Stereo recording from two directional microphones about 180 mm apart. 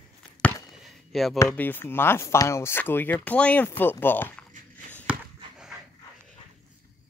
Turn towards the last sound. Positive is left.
turn(degrees=-5)  # may be behind; listen again after turning